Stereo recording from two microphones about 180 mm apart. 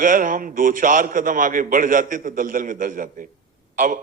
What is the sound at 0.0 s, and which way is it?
A man's voice, 50° right (ahead or behind).